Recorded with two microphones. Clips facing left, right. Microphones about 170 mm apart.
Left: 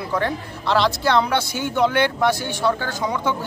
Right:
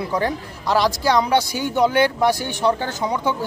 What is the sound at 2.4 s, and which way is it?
Speech, 20° right (ahead or behind).